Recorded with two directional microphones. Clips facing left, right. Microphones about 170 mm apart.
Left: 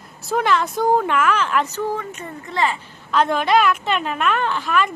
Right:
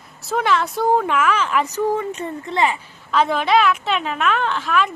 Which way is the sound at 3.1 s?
Centre (ahead or behind).